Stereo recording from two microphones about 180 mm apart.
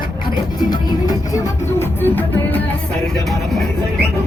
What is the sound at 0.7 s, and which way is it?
Music, 20° left (ahead or behind).